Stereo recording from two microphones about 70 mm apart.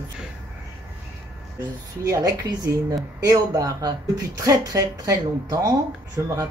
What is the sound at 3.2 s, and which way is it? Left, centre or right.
Speech, right.